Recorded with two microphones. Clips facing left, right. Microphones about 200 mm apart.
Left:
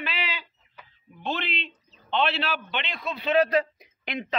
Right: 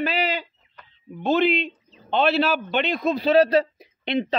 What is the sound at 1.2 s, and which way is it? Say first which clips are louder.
Speech: right 11 dB; 45° right (ahead or behind).